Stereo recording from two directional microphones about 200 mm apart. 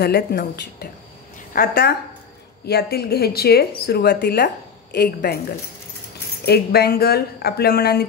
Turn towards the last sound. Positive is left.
turn(degrees=50)  # may be behind; listen again after turning